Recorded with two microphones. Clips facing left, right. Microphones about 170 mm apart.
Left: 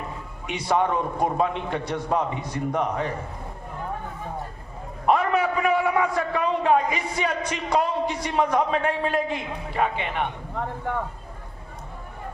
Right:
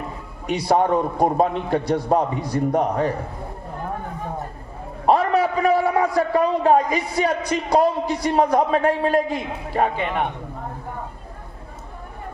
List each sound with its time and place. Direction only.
0.4 s a man's voice: 35° right (ahead or behind)
5.0 s a man's voice: 35° right (ahead or behind)
10.6 s a sound: 90° left